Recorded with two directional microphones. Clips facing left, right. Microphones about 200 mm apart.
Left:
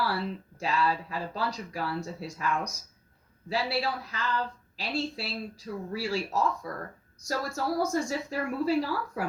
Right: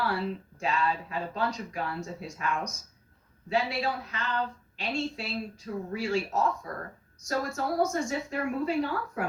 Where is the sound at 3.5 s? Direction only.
35° left (ahead or behind).